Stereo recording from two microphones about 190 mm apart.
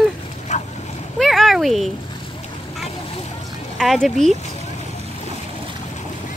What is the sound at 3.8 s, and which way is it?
Speech, centre (ahead or behind).